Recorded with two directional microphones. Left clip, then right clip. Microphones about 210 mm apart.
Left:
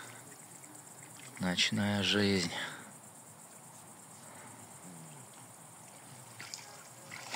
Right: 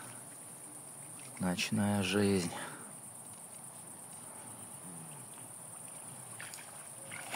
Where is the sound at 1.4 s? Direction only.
5° right (ahead or behind).